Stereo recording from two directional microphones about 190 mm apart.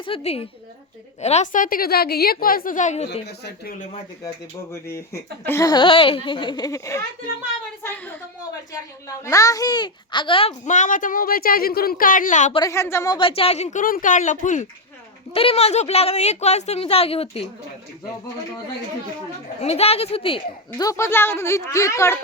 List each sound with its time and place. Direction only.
0.0 s a woman's voice: 30° left (ahead or behind)
3.2 s speech: 55° left (ahead or behind)
4.7 s speech: 15° left (ahead or behind)
10.7 s a woman's voice: 40° left (ahead or behind)
12.5 s speech: 15° left (ahead or behind)
13.1 s a woman's voice: 30° left (ahead or behind)
15.3 s a woman's voice: 30° left (ahead or behind)
19.6 s speech: 30° left (ahead or behind); by 22.2 s 15° left (ahead or behind)